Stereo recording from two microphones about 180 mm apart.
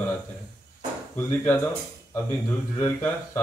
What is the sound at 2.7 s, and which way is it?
Speech, 15° left (ahead or behind).